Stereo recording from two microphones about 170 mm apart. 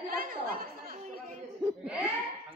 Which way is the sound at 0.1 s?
55° right (ahead or behind).